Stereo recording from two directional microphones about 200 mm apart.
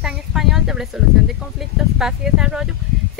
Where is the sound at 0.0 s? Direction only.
Centre (ahead or behind).